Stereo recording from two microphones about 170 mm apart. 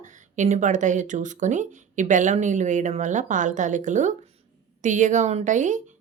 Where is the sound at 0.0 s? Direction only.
45° right (ahead or behind).